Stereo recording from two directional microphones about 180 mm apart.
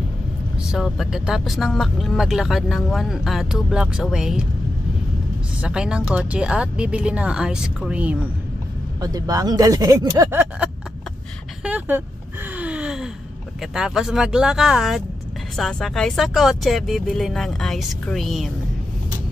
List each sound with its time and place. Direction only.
0.6 s speech: 5° right (ahead or behind)
5.6 s speech: 5° right (ahead or behind)
9.0 s speech: 20° right (ahead or behind)
12.5 s gasp: 5° right (ahead or behind)
13.6 s speech: 5° right (ahead or behind)